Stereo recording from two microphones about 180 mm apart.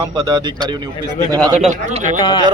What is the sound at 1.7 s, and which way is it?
Speech, 40° right (ahead or behind).